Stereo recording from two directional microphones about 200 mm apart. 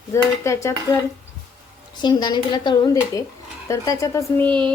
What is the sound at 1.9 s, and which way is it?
A woman's voice, 20° left (ahead or behind).